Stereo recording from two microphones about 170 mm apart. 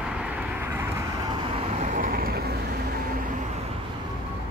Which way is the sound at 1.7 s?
45° right (ahead or behind).